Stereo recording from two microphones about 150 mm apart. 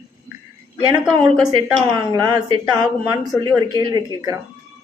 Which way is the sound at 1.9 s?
25° right (ahead or behind).